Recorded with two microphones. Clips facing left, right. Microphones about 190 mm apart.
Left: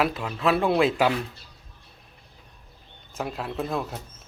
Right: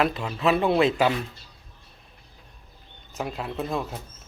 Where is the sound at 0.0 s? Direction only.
5° left (ahead or behind).